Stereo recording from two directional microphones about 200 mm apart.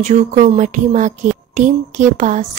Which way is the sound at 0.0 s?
35° right (ahead or behind).